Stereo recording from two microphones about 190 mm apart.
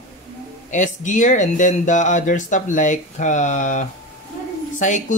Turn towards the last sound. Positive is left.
turn(degrees=40)  # may be behind; listen again after turning